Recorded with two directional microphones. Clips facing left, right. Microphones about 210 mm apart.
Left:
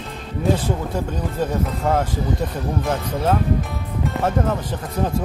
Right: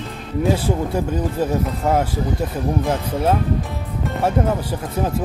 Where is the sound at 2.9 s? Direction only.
10° right (ahead or behind).